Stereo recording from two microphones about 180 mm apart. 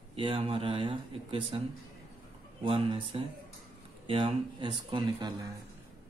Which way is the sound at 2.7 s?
30° right (ahead or behind).